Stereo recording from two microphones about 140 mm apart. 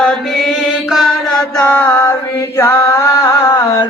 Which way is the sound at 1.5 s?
15° left (ahead or behind).